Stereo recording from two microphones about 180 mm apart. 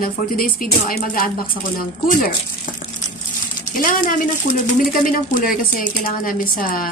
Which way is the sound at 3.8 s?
50° left (ahead or behind).